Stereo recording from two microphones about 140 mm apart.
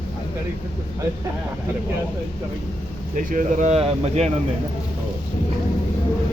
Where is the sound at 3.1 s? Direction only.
70° right (ahead or behind); by 4.3 s 50° right (ahead or behind).